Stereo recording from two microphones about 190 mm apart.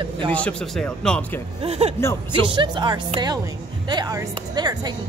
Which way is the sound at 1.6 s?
35° right (ahead or behind).